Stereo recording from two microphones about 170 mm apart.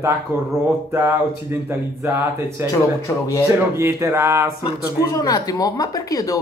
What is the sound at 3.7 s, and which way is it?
Speech, 15° right (ahead or behind).